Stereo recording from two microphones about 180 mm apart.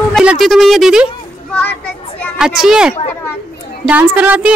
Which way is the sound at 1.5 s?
10° left (ahead or behind).